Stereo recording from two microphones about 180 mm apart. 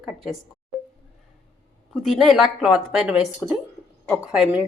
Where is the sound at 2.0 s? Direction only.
Centre (ahead or behind).